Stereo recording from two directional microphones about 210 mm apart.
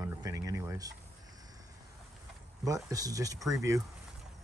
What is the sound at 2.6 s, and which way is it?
Speech, 15° right (ahead or behind).